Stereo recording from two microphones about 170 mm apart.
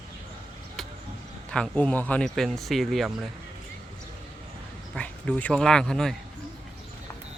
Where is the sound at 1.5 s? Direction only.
5° left (ahead or behind).